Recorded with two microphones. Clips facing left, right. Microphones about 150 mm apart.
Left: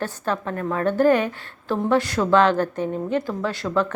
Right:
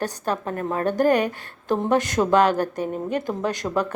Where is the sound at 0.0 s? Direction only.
15° right (ahead or behind).